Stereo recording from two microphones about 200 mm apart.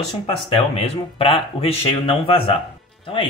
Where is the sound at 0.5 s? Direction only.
30° left (ahead or behind).